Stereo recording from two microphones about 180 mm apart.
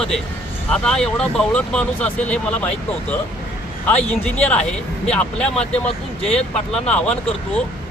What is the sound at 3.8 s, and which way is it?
Speech, 10° left (ahead or behind).